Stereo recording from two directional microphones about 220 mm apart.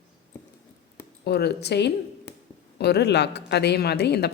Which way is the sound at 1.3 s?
50° left (ahead or behind).